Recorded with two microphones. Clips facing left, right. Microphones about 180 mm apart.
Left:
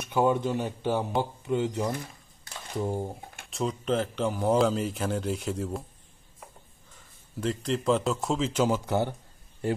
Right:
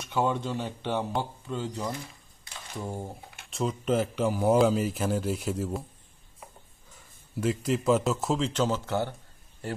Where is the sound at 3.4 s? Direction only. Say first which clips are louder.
Right 1 dB; centre (ahead or behind).